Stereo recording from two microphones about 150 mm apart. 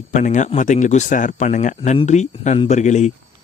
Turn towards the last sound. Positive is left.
turn(degrees=50)  # may be behind; listen again after turning